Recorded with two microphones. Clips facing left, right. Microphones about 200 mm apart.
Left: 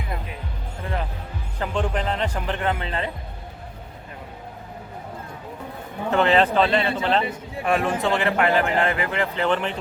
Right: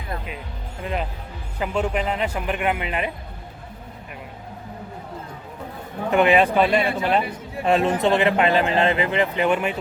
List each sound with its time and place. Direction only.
1.5 s speech: 10° right (ahead or behind)
6.1 s speech: 15° right (ahead or behind)
7.6 s a man's voice: 25° right (ahead or behind)